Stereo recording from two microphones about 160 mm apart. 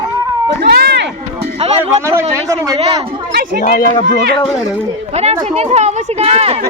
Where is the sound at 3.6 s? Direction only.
60° left (ahead or behind).